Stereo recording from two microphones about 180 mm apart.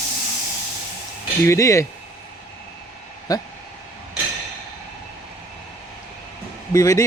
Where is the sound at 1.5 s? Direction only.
15° left (ahead or behind).